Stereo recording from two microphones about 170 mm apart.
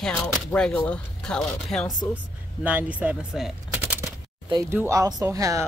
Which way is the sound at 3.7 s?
15° right (ahead or behind).